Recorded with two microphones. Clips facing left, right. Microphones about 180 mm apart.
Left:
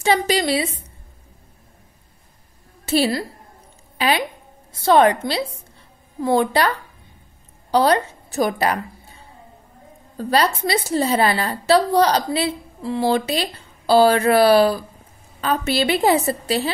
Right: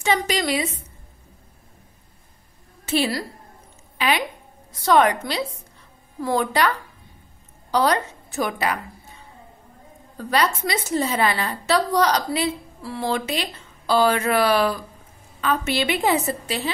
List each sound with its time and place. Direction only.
0.0 s a woman's voice: 30° left (ahead or behind)
2.8 s a woman's voice: 35° left (ahead or behind)
10.1 s a woman's voice: 30° left (ahead or behind)